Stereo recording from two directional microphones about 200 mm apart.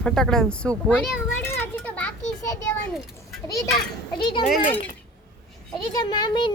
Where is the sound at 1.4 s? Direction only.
10° left (ahead or behind).